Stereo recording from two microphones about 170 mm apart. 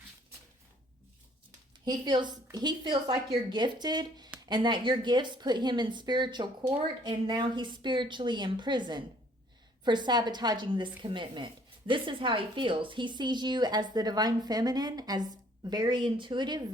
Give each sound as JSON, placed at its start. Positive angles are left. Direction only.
{"t": 1.8, "sound": "a woman's voice", "side_deg": -25}